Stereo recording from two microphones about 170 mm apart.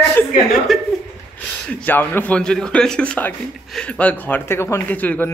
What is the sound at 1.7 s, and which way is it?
A man's voice, 10° left (ahead or behind).